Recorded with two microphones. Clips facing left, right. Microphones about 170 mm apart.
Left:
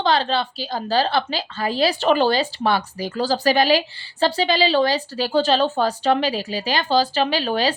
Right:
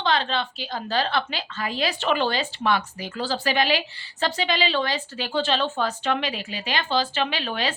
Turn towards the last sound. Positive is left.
turn(degrees=35)  # may be behind; listen again after turning